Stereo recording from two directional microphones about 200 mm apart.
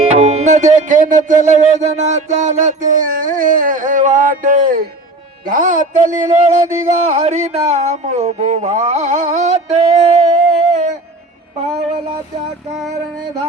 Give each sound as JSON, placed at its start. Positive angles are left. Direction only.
{"t": 0.0, "sound": "music", "side_deg": -30}
{"t": 5.5, "sound": "speech", "side_deg": -40}